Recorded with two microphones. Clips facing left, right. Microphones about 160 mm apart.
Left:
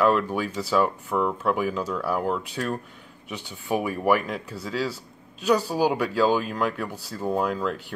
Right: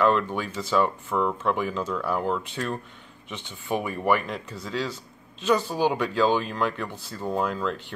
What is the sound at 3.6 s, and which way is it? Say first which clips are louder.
Speech: left 2 dB; 5° left (ahead or behind).